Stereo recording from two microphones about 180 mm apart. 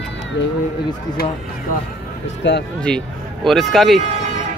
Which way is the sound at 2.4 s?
80° left.